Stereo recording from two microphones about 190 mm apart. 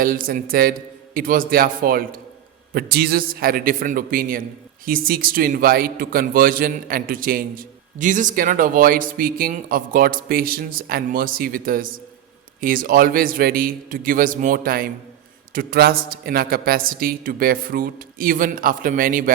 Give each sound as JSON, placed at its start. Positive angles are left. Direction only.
{"t": 0.0, "sound": "a man's voice", "side_deg": -45}